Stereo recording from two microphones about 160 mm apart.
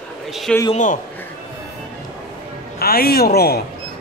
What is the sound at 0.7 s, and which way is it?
Speech, 50° left (ahead or behind).